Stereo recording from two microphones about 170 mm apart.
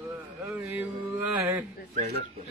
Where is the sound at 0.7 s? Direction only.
10° right (ahead or behind).